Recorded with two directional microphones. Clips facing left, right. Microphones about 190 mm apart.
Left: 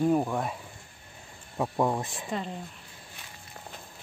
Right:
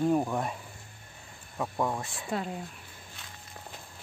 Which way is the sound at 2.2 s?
5° right (ahead or behind).